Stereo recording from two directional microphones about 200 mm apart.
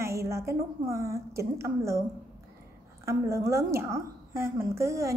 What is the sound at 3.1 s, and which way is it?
A woman's voice, 15° right (ahead or behind).